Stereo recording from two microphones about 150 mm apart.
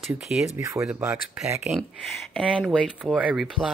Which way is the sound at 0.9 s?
5° right (ahead or behind).